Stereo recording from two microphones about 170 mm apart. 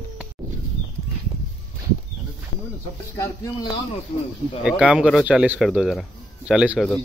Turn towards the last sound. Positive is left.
turn(degrees=-5)  # may be behind; listen again after turning